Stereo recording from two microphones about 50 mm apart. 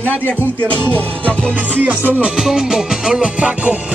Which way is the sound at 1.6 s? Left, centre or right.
Right.